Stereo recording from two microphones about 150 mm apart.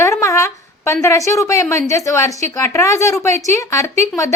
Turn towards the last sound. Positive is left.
turn(degrees=20)  # may be behind; listen again after turning